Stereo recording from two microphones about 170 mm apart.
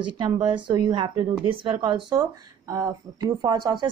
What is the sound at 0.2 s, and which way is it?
A woman's voice, 25° right (ahead or behind).